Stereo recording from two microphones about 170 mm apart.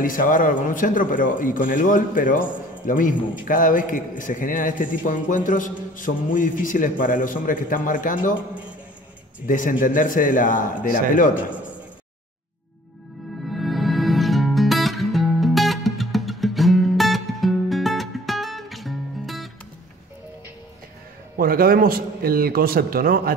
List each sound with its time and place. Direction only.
0.0 s a man's voice: 50° left (ahead or behind)
9.5 s a man's voice: 50° left (ahead or behind)
11.3 s a man's voice: 10° right (ahead or behind)
13.5 s music: centre (ahead or behind)
21.4 s a man's voice: 60° right (ahead or behind)